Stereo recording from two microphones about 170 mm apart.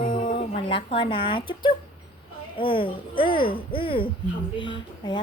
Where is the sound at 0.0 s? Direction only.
55° left (ahead or behind).